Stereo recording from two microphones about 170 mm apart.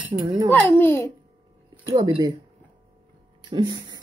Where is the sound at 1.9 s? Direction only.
25° right (ahead or behind).